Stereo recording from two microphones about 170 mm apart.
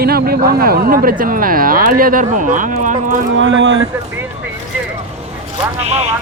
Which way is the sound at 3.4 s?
90° right.